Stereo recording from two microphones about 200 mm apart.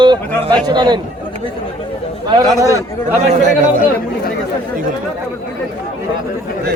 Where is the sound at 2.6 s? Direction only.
15° right (ahead or behind).